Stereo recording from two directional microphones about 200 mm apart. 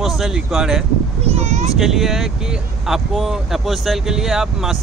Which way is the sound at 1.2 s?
30° right (ahead or behind).